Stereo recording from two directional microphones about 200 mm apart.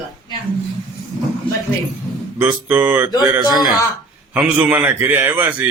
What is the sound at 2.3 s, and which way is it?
A man's voice, 10° right (ahead or behind).